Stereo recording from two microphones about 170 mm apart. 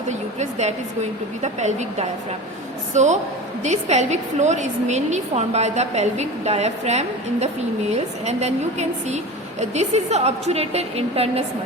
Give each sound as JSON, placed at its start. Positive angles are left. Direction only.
{"t": 0.1, "sound": "a woman's voice", "side_deg": -45}